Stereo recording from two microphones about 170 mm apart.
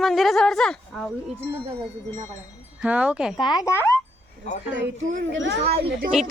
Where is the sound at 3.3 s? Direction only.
25° left (ahead or behind).